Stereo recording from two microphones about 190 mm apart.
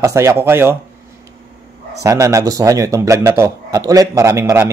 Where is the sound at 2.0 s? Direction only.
15° right (ahead or behind).